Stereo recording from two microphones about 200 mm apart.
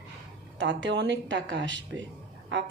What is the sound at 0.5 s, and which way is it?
Speech, 65° right (ahead or behind).